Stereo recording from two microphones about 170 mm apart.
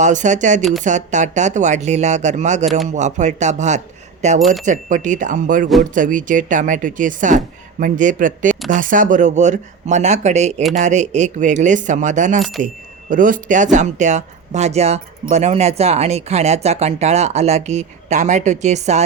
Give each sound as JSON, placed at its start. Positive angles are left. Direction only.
{"t": 0.0, "sound": "speech", "side_deg": -45}
{"t": 0.6, "sound": "speech", "side_deg": 0}
{"t": 0.9, "sound": "speech", "side_deg": -45}
{"t": 2.6, "sound": "speech", "side_deg": 0}
{"t": 2.9, "sound": "speech", "side_deg": -45}
{"t": 4.4, "sound": "speech", "side_deg": 0}
{"t": 4.6, "sound": "speech", "side_deg": -50}